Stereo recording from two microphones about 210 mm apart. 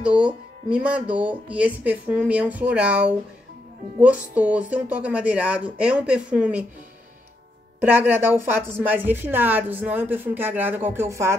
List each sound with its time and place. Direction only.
0.0 s speech: 5° right (ahead or behind)
7.8 s speech: 10° right (ahead or behind)